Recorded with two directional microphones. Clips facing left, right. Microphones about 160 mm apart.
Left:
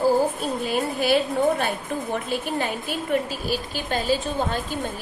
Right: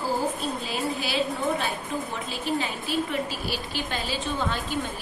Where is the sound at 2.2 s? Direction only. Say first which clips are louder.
Left 3 dB; 50° left (ahead or behind).